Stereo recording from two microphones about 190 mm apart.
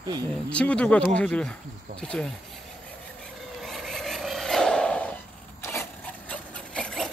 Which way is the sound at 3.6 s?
Centre (ahead or behind).